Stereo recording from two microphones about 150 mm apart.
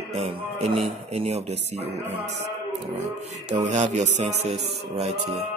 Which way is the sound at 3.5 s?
50° right (ahead or behind).